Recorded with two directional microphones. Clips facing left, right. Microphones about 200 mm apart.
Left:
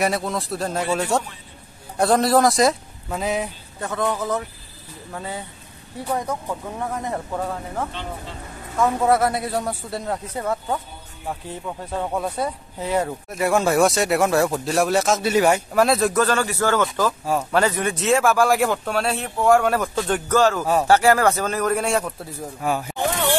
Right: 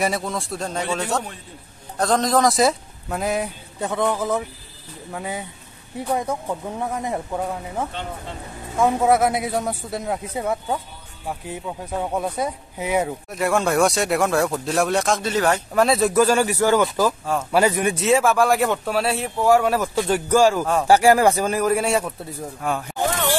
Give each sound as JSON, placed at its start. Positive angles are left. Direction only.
{"t": 0.0, "sound": "speech", "side_deg": 0}
{"t": 3.8, "sound": "speech", "side_deg": -15}
{"t": 6.8, "sound": "speech", "side_deg": -15}
{"t": 13.3, "sound": "speech", "side_deg": 0}
{"t": 18.1, "sound": "speech", "side_deg": 0}